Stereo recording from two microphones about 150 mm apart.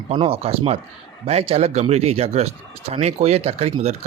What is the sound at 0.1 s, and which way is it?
A man's voice, 40° right (ahead or behind).